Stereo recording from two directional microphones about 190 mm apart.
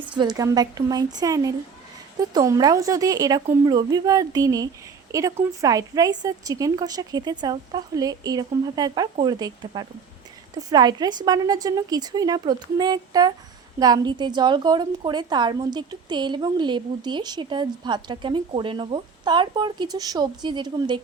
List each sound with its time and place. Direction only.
0.2 s a woman's voice: 20° right (ahead or behind)